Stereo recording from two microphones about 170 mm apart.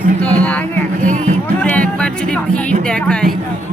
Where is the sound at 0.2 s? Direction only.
10° left (ahead or behind).